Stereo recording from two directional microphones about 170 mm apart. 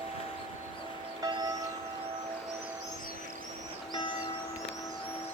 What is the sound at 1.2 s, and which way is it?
Tubular bells, 25° right (ahead or behind).